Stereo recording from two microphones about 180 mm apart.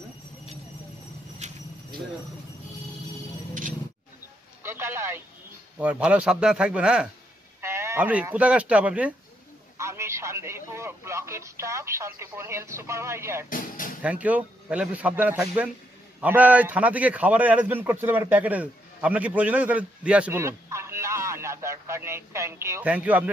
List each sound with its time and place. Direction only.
4.6 s a sound: 15° right (ahead or behind)
5.8 s a man's voice: 5° right (ahead or behind)
13.5 s speech: 50° left (ahead or behind)
14.0 s a man's voice: 10° right (ahead or behind)